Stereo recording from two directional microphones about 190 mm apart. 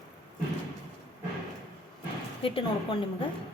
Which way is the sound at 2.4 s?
30° left (ahead or behind).